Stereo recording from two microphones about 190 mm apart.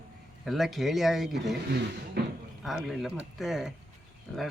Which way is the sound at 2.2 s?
55° right (ahead or behind).